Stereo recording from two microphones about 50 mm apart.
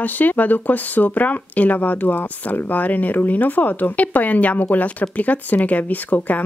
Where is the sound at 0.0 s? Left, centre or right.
Left.